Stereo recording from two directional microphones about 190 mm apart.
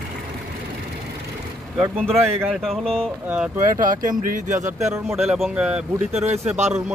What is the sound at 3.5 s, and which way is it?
Speech, 45° right (ahead or behind).